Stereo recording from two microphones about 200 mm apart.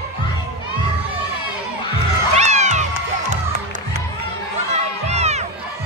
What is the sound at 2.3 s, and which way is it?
Cat, 35° right (ahead or behind).